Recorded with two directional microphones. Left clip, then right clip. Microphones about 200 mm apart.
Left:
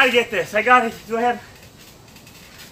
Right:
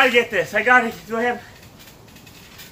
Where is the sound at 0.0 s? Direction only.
15° left (ahead or behind).